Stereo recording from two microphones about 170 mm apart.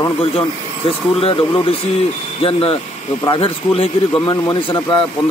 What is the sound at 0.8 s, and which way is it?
Speech, 35° left (ahead or behind).